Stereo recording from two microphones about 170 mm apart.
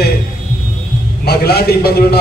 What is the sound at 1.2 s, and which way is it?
Speech, 70° left (ahead or behind).